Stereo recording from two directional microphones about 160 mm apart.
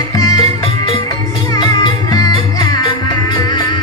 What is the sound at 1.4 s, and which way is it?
Music, 25° left (ahead or behind).